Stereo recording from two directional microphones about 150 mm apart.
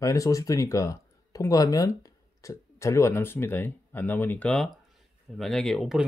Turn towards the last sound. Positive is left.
turn(degrees=0)  # may be behind; listen again after turning